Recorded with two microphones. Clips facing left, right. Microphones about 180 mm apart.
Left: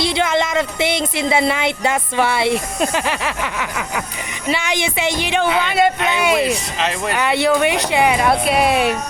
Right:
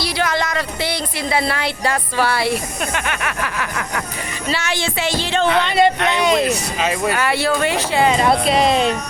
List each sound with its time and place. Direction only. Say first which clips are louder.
0.0 s a woman's voice: left 3 dB; 25° left (ahead or behind)
5.5 s speech: right 3 dB; 5° left (ahead or behind)
7.1 s speech: left 2 dB; 20° left (ahead or behind)